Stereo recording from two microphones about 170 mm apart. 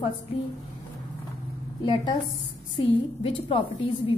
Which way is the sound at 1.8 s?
25° left (ahead or behind).